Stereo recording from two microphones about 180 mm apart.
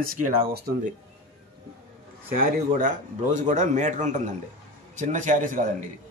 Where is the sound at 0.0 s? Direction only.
55° right (ahead or behind).